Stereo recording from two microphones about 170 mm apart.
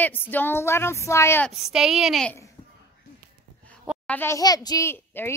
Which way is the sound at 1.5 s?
5° right (ahead or behind).